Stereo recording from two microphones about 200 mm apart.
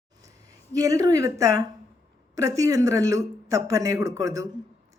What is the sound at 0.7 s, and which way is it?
Speech, 15° right (ahead or behind).